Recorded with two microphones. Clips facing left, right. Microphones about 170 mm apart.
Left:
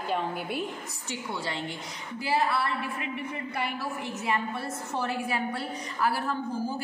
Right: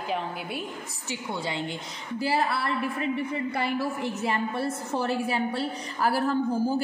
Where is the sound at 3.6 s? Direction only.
35° right (ahead or behind).